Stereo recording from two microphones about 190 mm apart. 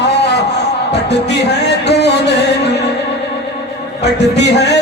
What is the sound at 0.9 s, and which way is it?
Music, 60° left (ahead or behind).